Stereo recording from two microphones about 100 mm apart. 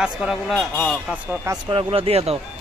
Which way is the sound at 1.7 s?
65° right (ahead or behind).